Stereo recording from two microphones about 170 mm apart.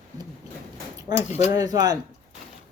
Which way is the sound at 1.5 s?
20° right (ahead or behind).